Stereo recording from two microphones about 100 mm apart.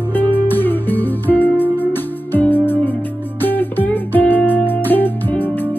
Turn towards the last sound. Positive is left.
turn(degrees=20)  # may be behind; listen again after turning